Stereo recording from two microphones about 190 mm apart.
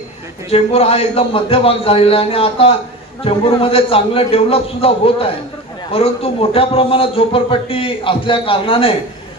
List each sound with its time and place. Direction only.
0.5 s a man's voice: 30° left (ahead or behind)